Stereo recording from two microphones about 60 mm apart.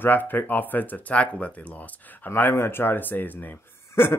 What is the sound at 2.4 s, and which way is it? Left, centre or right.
Speech, left.